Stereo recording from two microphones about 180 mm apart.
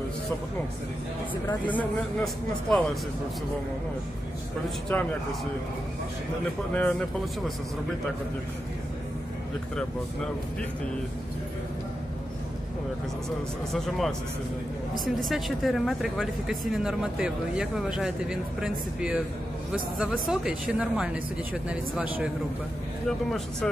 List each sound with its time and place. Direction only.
1.7 s speech: 10° left (ahead or behind)
4.6 s speech: 5° left (ahead or behind)
6.7 s speech: 10° left (ahead or behind)
13.7 s speech: centre (ahead or behind)
15.2 s speech: centre (ahead or behind)